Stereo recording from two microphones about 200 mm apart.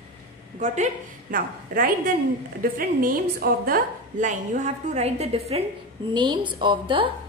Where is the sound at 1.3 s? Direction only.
45° right (ahead or behind).